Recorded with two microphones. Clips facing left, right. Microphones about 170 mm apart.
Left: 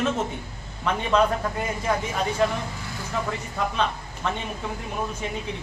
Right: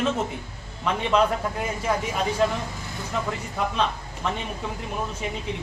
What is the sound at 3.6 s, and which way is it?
Speech, centre (ahead or behind).